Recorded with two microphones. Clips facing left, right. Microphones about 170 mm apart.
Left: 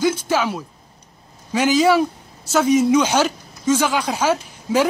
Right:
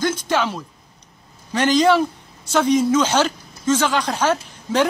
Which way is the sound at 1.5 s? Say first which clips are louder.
Even; 10° left (ahead or behind).